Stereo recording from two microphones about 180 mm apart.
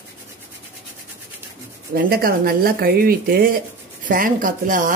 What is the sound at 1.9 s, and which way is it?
Speech, 55° right (ahead or behind).